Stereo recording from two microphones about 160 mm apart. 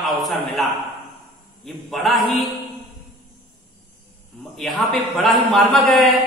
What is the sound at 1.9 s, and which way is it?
Speech, centre (ahead or behind).